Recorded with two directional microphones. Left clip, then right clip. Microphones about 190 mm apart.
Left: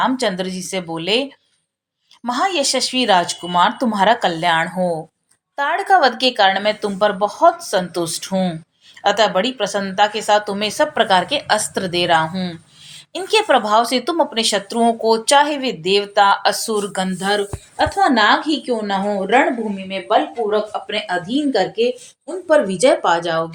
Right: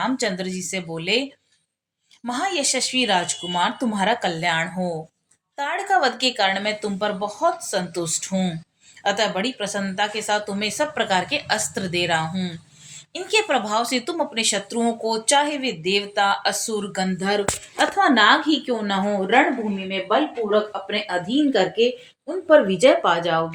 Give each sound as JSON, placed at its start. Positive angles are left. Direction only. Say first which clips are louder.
{"t": 0.0, "sound": "a woman's voice", "louder": "left 6 dB", "side_deg": 15}
{"t": 19.9, "sound": "speech", "louder": "left 4 dB", "side_deg": 45}